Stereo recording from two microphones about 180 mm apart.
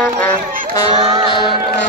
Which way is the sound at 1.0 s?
35° right (ahead or behind).